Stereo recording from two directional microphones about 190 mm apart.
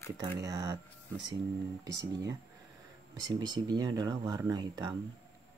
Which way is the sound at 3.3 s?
20° right (ahead or behind).